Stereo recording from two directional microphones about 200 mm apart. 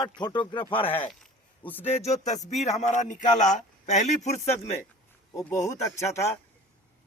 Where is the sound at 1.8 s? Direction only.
30° left (ahead or behind).